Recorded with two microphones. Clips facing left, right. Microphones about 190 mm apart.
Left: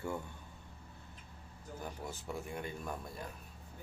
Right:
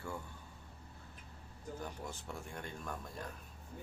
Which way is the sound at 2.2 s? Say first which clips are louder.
Left 4 dB; 5° left (ahead or behind).